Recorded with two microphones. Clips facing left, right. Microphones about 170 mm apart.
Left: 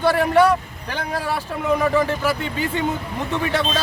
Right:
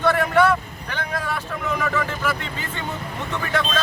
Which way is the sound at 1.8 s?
30° left (ahead or behind).